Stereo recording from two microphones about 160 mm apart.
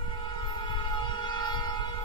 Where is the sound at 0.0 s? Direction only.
30° left (ahead or behind).